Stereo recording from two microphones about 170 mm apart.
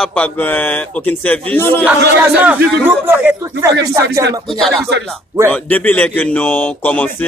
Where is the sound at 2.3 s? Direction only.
10° right (ahead or behind).